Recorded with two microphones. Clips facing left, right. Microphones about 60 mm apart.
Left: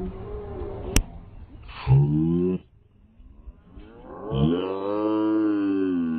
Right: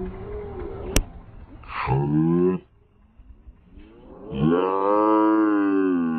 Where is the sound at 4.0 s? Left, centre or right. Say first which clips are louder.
Left 5 dB; left.